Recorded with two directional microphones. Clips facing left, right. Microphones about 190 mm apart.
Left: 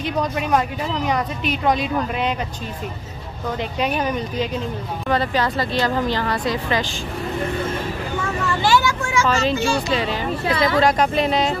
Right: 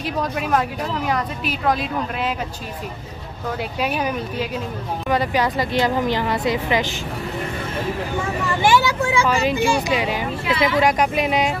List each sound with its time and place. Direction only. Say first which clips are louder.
0.0 s speech: left 1 dB; centre (ahead or behind)
3.8 s speech: left 1 dB; 5° right (ahead or behind)
8.6 s speech: right 2 dB; 15° right (ahead or behind)